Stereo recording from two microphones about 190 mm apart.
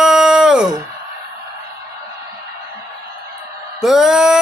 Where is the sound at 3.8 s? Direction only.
Centre (ahead or behind).